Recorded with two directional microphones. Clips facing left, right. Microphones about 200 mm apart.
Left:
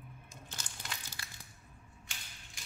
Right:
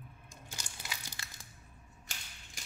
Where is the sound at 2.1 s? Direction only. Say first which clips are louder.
Right 2 dB; 40° right (ahead or behind).